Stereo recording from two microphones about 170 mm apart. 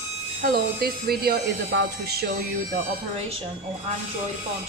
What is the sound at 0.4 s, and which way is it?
Speech, 60° right (ahead or behind).